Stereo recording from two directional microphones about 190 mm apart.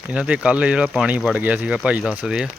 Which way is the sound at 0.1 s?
5° right (ahead or behind).